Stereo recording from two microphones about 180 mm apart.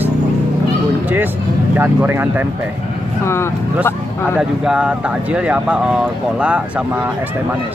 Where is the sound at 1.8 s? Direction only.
10° right (ahead or behind).